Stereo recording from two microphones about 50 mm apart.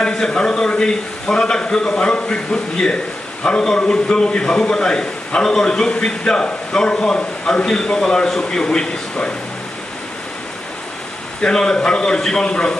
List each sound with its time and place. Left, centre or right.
0.1 s a man's voice: centre
11.4 s a man's voice: centre